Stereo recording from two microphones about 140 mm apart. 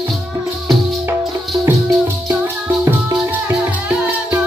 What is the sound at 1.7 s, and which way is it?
Music, 20° right (ahead or behind).